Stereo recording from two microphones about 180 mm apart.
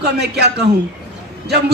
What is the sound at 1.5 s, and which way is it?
Speech, 65° right (ahead or behind).